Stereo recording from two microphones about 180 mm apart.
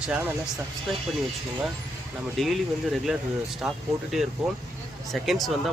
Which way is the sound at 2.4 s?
Centre (ahead or behind).